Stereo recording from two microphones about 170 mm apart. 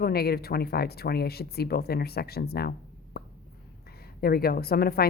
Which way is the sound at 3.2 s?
65° left (ahead or behind).